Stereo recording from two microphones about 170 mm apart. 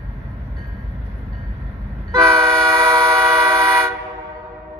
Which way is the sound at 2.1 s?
20° right (ahead or behind).